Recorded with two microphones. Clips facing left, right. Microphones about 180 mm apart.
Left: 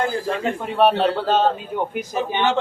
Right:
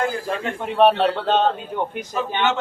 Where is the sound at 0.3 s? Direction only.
Centre (ahead or behind).